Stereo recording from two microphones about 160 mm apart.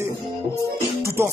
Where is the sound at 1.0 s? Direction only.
15° right (ahead or behind).